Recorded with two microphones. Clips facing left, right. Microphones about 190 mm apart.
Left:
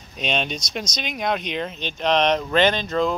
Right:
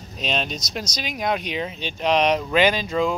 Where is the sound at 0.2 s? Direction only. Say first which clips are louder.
Left 1 dB; centre (ahead or behind).